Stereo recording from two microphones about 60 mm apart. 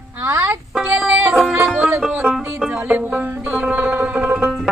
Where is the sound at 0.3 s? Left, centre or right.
Right.